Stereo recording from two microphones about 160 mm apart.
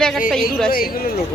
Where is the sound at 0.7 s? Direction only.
65° left (ahead or behind).